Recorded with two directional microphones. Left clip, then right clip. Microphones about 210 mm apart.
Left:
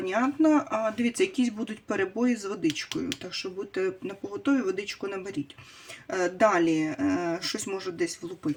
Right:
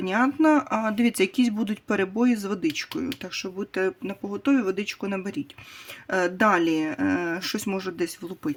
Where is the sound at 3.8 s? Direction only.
50° right (ahead or behind).